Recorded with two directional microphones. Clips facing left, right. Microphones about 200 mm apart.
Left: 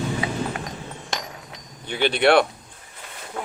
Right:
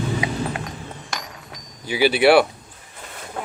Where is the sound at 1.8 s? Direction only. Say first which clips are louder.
Right 3 dB; 5° right (ahead or behind).